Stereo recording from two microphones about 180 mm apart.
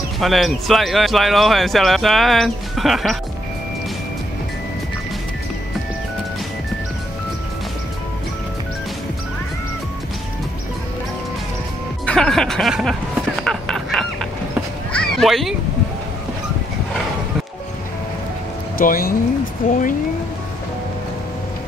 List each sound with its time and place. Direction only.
0.2 s speech: centre (ahead or behind)
12.1 s music: 5° left (ahead or behind)
13.4 s a sound: 5° left (ahead or behind)
18.8 s speech: 55° left (ahead or behind)